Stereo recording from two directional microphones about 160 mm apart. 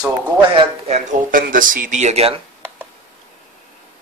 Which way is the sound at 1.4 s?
60° right (ahead or behind).